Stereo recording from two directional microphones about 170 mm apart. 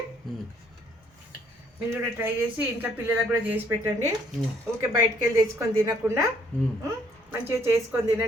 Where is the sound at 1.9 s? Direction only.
15° right (ahead or behind).